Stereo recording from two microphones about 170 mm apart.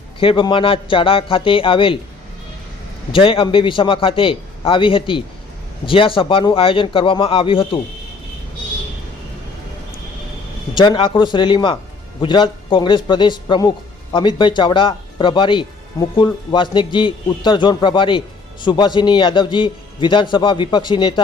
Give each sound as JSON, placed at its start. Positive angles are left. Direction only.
{"t": 0.2, "sound": "a man's voice", "side_deg": 30}
{"t": 3.1, "sound": "a man's voice", "side_deg": 30}
{"t": 10.8, "sound": "a man's voice", "side_deg": 30}